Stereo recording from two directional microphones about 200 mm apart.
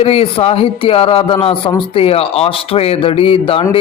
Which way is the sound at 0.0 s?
30° left (ahead or behind).